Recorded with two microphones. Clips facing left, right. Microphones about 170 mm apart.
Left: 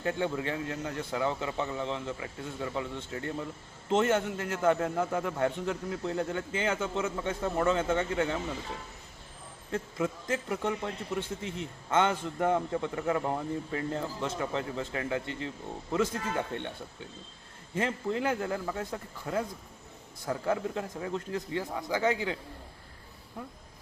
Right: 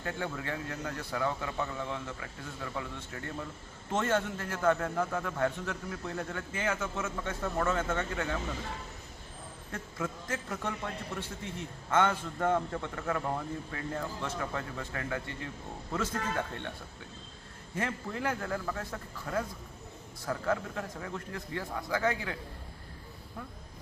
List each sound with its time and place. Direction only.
0.0 s a man's voice: 20° left (ahead or behind)
9.7 s a man's voice: 15° left (ahead or behind)
17.7 s a man's voice: 20° left (ahead or behind)